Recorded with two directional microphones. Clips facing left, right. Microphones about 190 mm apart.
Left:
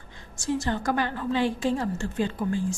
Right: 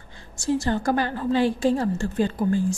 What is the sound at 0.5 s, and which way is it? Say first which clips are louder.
A woman's voice: right 4 dB; 30° right (ahead or behind).